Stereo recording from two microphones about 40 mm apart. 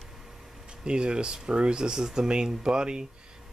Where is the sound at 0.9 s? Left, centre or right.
Right.